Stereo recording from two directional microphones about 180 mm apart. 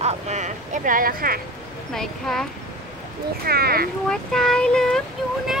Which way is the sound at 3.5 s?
55° right (ahead or behind).